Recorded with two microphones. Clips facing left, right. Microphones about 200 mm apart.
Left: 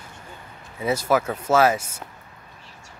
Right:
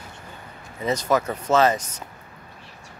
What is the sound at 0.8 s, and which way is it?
Speech, 10° left (ahead or behind).